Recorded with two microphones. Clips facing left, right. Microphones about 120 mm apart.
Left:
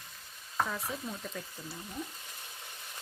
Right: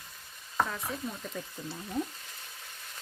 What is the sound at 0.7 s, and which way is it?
Speech, centre (ahead or behind).